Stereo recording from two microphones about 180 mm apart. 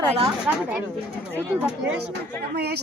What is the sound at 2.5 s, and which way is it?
Speech, 65° right (ahead or behind).